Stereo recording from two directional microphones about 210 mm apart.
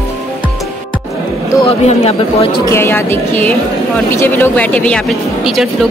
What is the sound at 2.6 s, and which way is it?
Speech, 10° left (ahead or behind).